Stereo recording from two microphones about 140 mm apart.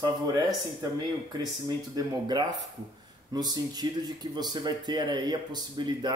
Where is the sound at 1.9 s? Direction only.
30° right (ahead or behind).